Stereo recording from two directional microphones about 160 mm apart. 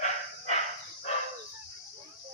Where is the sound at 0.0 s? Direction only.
45° left (ahead or behind).